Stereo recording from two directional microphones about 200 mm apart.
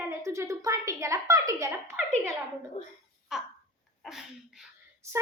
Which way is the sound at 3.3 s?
5° right (ahead or behind).